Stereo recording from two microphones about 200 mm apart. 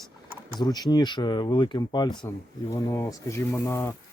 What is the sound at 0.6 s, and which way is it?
Speech, 20° left (ahead or behind).